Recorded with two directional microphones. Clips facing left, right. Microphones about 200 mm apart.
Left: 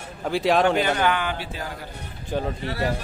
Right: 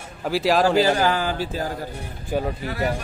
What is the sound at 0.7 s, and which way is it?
A man's voice, 30° right (ahead or behind).